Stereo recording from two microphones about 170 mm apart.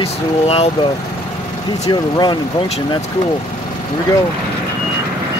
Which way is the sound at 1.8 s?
25° left (ahead or behind).